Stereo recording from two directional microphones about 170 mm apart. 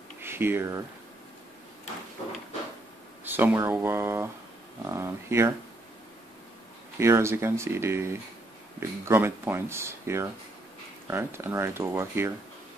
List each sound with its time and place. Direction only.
0.2 s speech: 15° right (ahead or behind)
3.3 s speech: 10° right (ahead or behind)
7.0 s speech: 15° right (ahead or behind)